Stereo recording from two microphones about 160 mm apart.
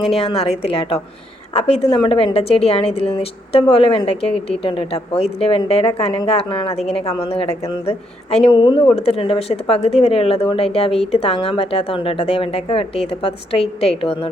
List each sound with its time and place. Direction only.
0.0 s a woman's voice: 35° left (ahead or behind)